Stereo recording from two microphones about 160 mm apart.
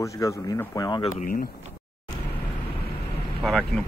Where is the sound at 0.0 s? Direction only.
20° left (ahead or behind).